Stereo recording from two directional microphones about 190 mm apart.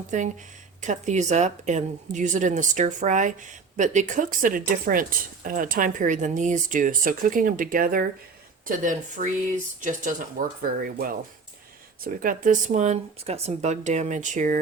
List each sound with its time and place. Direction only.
0.1 s a woman's voice: 40° right (ahead or behind)